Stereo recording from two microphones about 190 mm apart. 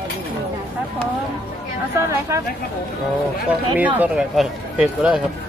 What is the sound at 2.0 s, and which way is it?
Speech, 15° right (ahead or behind).